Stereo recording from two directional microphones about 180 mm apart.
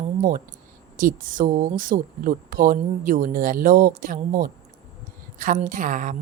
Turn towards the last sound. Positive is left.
turn(degrees=-45)  # may be behind; listen again after turning